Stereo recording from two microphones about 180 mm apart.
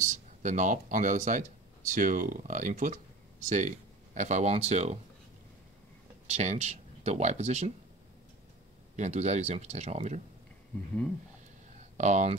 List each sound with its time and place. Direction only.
0.0 s speech: 45° right (ahead or behind)
6.3 s speech: 40° right (ahead or behind)
8.9 s speech: 40° right (ahead or behind)
12.0 s speech: 40° right (ahead or behind)